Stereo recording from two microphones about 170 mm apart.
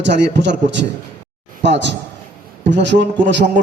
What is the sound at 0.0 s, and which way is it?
A man's voice, 90° right.